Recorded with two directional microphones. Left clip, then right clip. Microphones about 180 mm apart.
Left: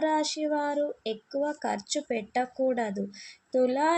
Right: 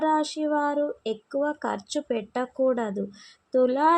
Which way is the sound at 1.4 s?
25° right (ahead or behind).